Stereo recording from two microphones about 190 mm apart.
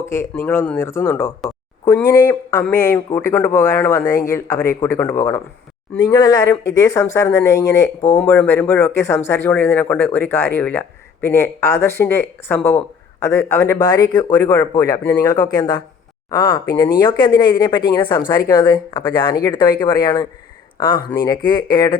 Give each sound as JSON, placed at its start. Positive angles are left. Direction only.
{"t": 0.0, "sound": "speech", "side_deg": 15}
{"t": 1.5, "sound": "a sound", "side_deg": 20}
{"t": 2.6, "sound": "speech", "side_deg": 15}